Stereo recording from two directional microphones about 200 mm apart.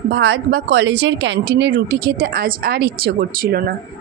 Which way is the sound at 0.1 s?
60° right (ahead or behind).